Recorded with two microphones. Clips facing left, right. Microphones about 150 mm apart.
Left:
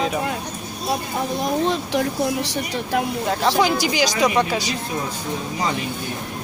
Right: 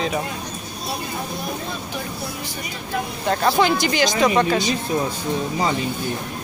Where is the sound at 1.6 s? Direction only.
90° left.